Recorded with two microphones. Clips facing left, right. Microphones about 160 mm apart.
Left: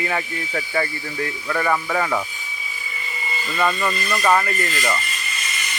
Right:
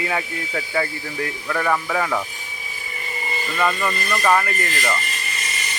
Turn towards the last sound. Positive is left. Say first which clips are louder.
# right 1 dB
turn(degrees=-35)  # may be behind; listen again after turning